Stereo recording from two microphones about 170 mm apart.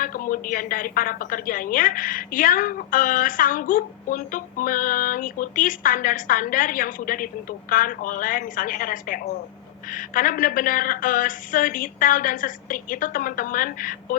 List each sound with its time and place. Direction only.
0.0 s a woman's voice: 55° left (ahead or behind)